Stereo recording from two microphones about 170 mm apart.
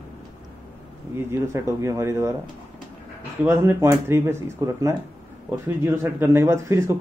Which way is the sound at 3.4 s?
15° right (ahead or behind).